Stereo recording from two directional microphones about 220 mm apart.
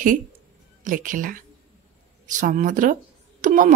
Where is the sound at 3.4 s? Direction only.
35° right (ahead or behind).